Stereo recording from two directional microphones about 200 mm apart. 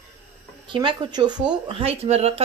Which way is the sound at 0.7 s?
25° right (ahead or behind).